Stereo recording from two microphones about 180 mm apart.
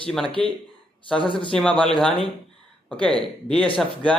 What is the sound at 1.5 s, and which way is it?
Speech, 5° left (ahead or behind).